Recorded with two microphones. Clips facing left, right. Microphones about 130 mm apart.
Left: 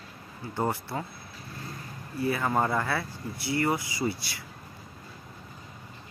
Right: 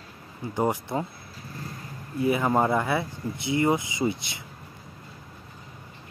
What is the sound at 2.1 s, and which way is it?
Speech, 20° right (ahead or behind).